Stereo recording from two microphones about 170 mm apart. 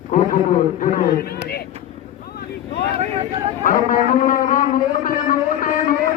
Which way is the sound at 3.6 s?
55° left (ahead or behind).